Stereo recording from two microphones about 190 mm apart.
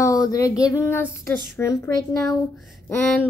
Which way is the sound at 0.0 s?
20° left (ahead or behind).